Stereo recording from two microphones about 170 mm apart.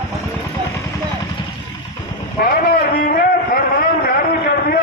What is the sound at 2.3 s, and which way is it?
Vehicle, 60° left (ahead or behind).